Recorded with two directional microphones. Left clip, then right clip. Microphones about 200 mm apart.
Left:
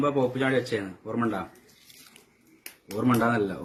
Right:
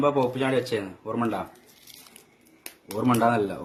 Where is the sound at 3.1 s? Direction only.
10° left (ahead or behind).